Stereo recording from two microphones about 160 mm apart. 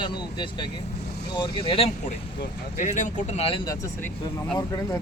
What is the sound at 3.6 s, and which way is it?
Speech, 20° left (ahead or behind).